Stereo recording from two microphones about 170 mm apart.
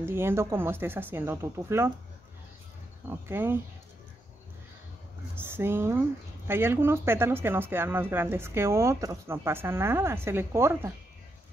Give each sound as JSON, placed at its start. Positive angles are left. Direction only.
{"t": 0.0, "sound": "speech", "side_deg": -15}
{"t": 3.1, "sound": "speech", "side_deg": -15}
{"t": 5.3, "sound": "speech", "side_deg": -15}